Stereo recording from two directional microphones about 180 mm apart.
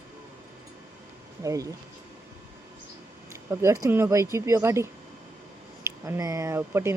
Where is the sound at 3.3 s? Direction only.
15° right (ahead or behind).